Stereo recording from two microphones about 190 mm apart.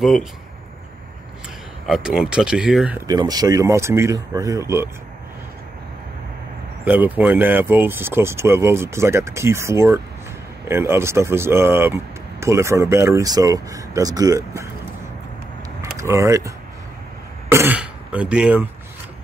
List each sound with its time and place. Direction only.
0.0 s speech: centre (ahead or behind)
1.9 s speech: 5° right (ahead or behind)
3.1 s speech: 20° right (ahead or behind)
6.8 s speech: 10° right (ahead or behind)
15.8 s speech: 15° right (ahead or behind)
17.5 s throat clearing: 10° right (ahead or behind)